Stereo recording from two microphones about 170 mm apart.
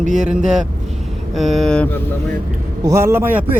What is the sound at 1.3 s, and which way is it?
Speech, centre (ahead or behind).